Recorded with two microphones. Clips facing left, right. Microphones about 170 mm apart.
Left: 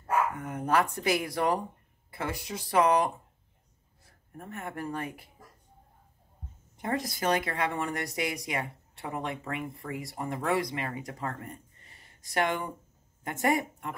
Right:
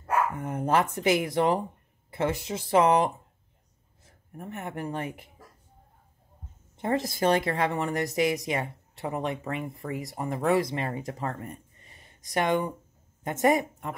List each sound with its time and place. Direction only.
0.4 s speech: 25° right (ahead or behind)
6.8 s speech: 25° right (ahead or behind)